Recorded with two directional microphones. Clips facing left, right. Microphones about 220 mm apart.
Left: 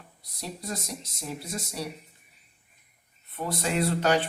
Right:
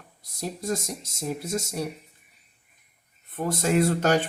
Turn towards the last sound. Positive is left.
turn(degrees=-45)  # may be behind; listen again after turning